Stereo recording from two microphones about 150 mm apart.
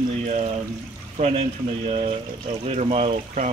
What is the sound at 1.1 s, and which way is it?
Speech, 45° right (ahead or behind).